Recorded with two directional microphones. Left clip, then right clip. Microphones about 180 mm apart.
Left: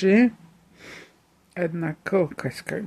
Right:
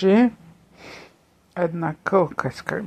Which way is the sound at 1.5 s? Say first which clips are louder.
Right 4 dB; 15° left (ahead or behind).